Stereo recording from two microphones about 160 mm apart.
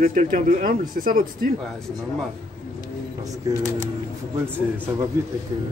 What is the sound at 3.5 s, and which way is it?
Speech, 20° right (ahead or behind).